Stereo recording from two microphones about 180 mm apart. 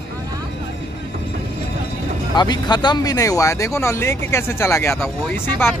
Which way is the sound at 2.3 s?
25° left (ahead or behind).